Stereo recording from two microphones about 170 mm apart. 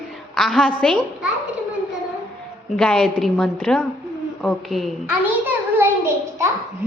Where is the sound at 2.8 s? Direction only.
5° left (ahead or behind); by 6.4 s 15° right (ahead or behind).